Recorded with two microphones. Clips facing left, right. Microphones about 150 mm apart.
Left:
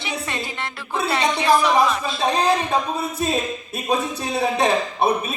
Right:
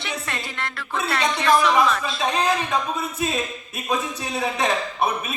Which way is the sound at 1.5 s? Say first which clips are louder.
Left 1 dB; 35° left (ahead or behind).